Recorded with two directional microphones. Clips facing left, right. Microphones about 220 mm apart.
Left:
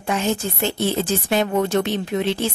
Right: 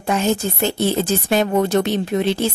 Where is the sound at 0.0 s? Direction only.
40° right (ahead or behind).